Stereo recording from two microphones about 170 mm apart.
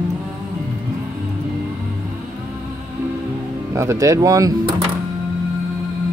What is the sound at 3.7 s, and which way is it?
Speech, 15° right (ahead or behind).